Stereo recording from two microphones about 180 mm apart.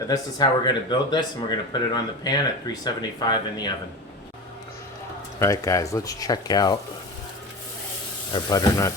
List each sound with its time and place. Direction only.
0.1 s speech: 25° left (ahead or behind)
5.4 s speech: 15° left (ahead or behind)
8.3 s speech: 20° left (ahead or behind)